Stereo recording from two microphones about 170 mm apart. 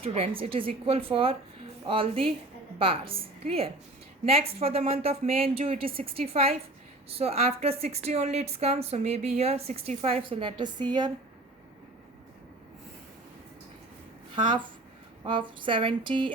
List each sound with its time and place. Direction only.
0.0 s a woman's voice: 35° right (ahead or behind)
14.4 s speech: 30° right (ahead or behind)